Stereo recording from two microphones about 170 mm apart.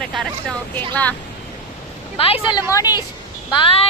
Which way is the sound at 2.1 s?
35° left (ahead or behind).